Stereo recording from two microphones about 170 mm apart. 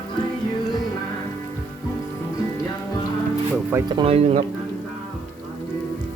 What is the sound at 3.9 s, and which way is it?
Speech, 30° right (ahead or behind).